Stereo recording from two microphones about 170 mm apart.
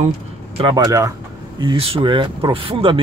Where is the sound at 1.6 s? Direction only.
30° right (ahead or behind).